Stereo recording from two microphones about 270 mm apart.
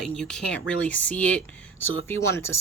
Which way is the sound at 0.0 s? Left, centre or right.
Centre.